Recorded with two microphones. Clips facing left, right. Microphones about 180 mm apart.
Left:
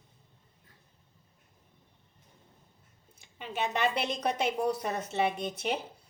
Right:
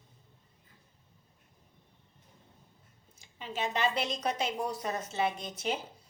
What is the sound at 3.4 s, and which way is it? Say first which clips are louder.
A woman's voice: left 2 dB; 60° left (ahead or behind).